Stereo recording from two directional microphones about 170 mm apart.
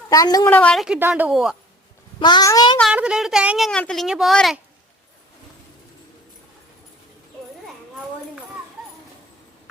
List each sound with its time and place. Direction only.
0.1 s a child's voice: 20° left (ahead or behind)
0.5 s a woman's voice: 5° left (ahead or behind)
0.9 s a woman's voice: 10° right (ahead or behind)
2.1 s a child's voice: 25° left (ahead or behind)
2.9 s speech: 5° right (ahead or behind)